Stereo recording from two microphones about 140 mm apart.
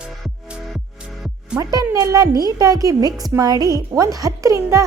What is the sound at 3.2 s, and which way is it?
A woman's voice, 25° right (ahead or behind).